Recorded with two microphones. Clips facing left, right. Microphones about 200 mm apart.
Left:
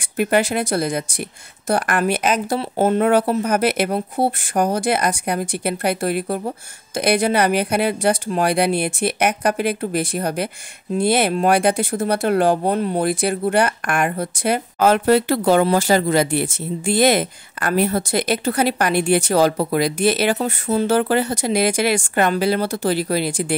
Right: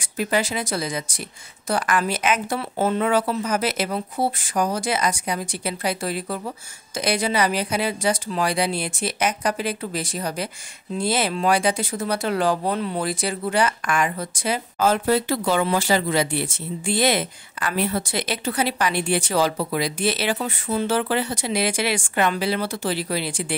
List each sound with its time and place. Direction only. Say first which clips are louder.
0.2 s speech: left 5 dB; 60° left (ahead or behind)
2.2 s speech: left 3 dB; 40° left (ahead or behind)